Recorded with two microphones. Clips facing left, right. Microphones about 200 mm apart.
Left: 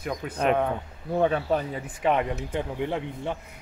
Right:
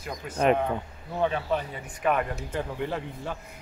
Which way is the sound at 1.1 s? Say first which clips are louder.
Left 3 dB; 50° left (ahead or behind).